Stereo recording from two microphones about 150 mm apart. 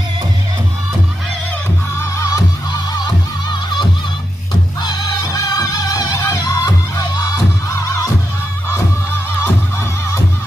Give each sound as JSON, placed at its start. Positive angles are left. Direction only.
{"t": 2.0, "sound": "music", "side_deg": 20}
{"t": 4.8, "sound": "music", "side_deg": 25}